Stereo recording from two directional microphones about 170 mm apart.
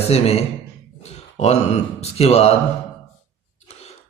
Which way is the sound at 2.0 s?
40° left (ahead or behind).